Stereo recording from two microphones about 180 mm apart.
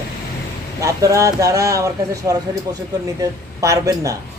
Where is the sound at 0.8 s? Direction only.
15° right (ahead or behind).